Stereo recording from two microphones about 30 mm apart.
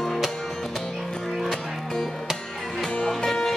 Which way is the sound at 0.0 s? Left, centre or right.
Centre.